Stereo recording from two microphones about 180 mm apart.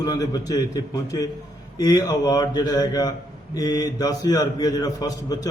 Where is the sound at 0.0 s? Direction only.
20° left (ahead or behind).